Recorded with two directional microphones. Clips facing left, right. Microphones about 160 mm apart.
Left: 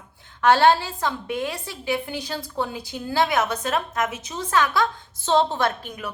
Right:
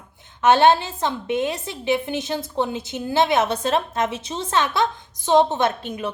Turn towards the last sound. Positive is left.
turn(degrees=-25)  # may be behind; listen again after turning